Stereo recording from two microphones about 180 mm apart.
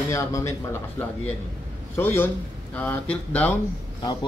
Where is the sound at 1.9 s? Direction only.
15° left (ahead or behind).